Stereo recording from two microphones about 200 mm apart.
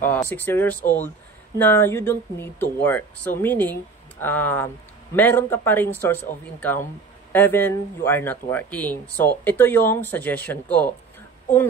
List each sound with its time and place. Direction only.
0.0 s speech: 10° left (ahead or behind)
7.3 s speech: 10° left (ahead or behind)